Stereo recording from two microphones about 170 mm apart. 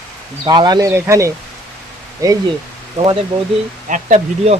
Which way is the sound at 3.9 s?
45° right (ahead or behind).